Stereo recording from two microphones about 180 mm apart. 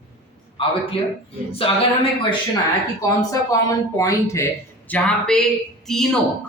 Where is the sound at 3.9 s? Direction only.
15° left (ahead or behind).